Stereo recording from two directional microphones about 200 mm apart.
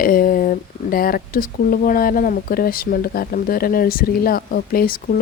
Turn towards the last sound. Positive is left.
turn(degrees=45)  # may be behind; listen again after turning